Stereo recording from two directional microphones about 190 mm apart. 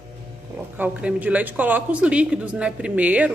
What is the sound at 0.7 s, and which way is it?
Speech, 10° right (ahead or behind).